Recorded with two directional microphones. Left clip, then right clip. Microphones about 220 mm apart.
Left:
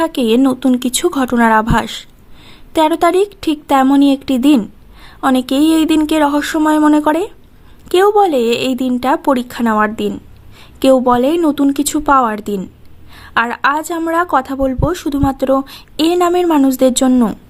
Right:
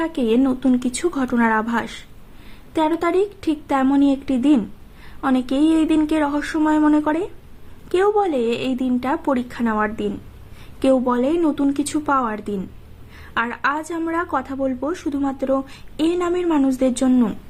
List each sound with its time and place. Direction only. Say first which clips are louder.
0.0 s a woman's voice: left 6 dB; 40° left (ahead or behind)